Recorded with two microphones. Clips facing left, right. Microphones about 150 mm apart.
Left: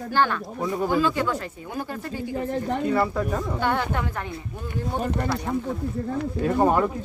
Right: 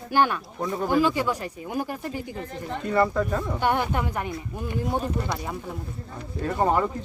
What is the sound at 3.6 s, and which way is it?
Speech, 15° right (ahead or behind).